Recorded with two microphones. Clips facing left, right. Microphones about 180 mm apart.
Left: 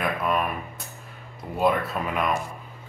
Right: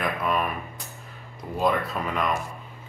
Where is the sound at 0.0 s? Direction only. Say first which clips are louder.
Left 1 dB; centre (ahead or behind).